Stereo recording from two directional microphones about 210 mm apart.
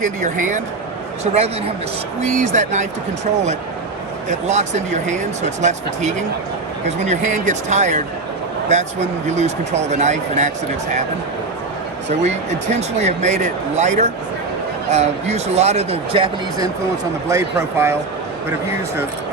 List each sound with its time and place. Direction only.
0.0 s speech: 35° right (ahead or behind)
4.3 s speech: 35° right (ahead or behind)
12.2 s speech: 30° right (ahead or behind)
17.2 s a man's voice: 15° right (ahead or behind)